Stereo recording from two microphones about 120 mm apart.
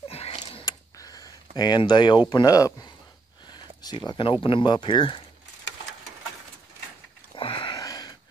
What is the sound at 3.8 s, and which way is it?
Speech, 40° left (ahead or behind).